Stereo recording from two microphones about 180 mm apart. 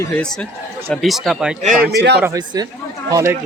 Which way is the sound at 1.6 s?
45° right (ahead or behind).